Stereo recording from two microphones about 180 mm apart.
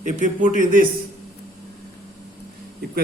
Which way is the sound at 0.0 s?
45° right (ahead or behind).